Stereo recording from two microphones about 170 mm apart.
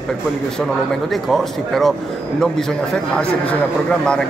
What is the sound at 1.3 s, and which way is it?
Speech, centre (ahead or behind).